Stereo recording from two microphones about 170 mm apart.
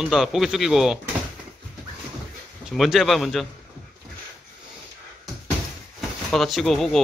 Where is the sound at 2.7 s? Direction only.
Centre (ahead or behind).